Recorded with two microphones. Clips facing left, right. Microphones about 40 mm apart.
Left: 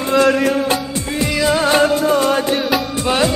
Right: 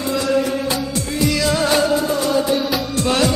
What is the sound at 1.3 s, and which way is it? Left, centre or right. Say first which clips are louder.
Music: left 3 dB; left.